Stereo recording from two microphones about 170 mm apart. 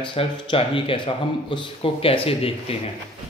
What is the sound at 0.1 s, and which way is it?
Speech, 30° left (ahead or behind).